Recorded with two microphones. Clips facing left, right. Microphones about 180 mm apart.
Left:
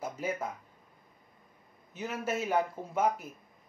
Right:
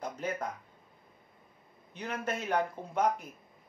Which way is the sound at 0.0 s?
5° left (ahead or behind).